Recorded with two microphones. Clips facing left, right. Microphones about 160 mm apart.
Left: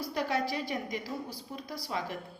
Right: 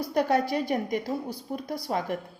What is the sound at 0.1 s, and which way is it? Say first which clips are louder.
A woman's voice: right 8 dB; 50° right (ahead or behind).